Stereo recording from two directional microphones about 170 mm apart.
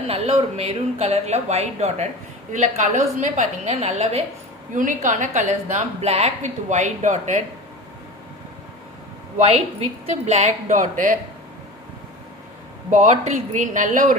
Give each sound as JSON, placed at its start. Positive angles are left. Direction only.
{"t": 0.1, "sound": "a woman's voice", "side_deg": -35}
{"t": 4.7, "sound": "a woman's voice", "side_deg": -50}
{"t": 9.4, "sound": "a woman's voice", "side_deg": -40}
{"t": 12.9, "sound": "a woman's voice", "side_deg": -45}